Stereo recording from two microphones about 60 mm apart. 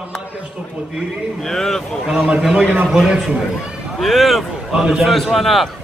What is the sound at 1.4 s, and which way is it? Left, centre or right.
Speech, centre.